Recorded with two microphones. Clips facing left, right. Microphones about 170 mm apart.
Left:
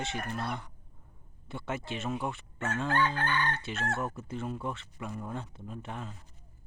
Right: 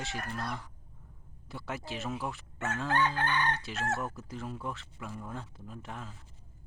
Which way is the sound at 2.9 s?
20° right (ahead or behind).